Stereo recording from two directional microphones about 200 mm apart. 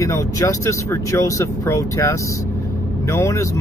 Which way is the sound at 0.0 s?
15° left (ahead or behind).